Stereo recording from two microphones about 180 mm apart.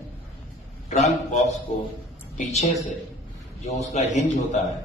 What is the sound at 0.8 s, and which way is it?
A man's voice, 40° left (ahead or behind).